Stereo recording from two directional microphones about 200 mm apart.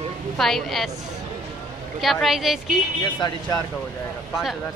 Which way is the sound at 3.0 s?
20° left (ahead or behind).